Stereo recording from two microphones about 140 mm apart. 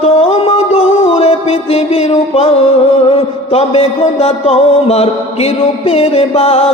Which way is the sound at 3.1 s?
45° left (ahead or behind).